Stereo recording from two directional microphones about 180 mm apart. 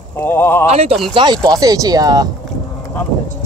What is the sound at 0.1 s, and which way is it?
Speech, 10° left (ahead or behind).